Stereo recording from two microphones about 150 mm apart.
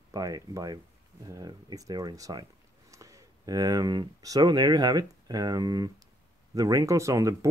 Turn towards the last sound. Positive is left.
turn(degrees=-20)  # may be behind; listen again after turning